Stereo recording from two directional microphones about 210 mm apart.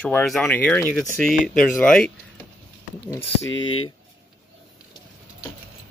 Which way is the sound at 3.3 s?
65° left (ahead or behind).